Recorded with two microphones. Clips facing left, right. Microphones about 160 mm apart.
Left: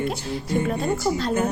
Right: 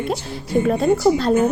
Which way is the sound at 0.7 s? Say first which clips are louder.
Right 7 dB; 55° right (ahead or behind).